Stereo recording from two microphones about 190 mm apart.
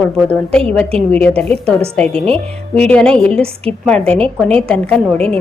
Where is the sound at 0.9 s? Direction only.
30° right (ahead or behind).